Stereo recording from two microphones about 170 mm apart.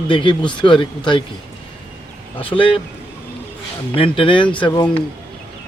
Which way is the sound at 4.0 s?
30° left (ahead or behind).